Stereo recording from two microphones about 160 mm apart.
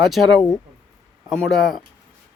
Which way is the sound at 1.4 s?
Centre (ahead or behind).